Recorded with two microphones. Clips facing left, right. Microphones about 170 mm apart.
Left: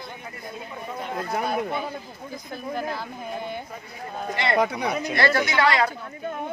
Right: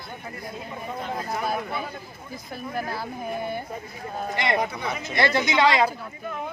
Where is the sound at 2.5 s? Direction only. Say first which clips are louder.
Left 1 dB; 5° right (ahead or behind).